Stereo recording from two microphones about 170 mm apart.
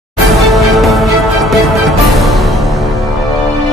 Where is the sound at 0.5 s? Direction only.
Centre (ahead or behind).